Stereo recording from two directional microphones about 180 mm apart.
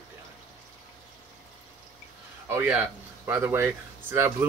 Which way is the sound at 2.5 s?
10° right (ahead or behind).